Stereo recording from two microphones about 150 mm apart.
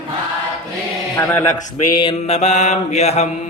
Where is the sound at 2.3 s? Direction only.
50° left (ahead or behind).